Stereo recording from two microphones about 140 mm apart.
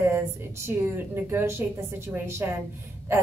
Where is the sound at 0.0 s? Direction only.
15° right (ahead or behind).